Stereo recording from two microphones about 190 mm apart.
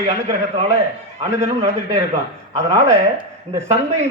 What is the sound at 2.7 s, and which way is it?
Speech, 15° right (ahead or behind).